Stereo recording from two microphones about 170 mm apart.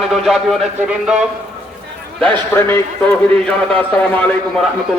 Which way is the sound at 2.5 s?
15° left (ahead or behind).